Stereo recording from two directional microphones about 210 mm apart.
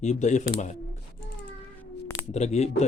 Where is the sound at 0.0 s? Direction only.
35° left (ahead or behind).